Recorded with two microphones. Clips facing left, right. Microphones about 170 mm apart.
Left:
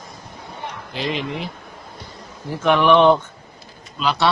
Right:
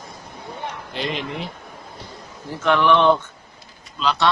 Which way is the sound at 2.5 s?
15° left (ahead or behind).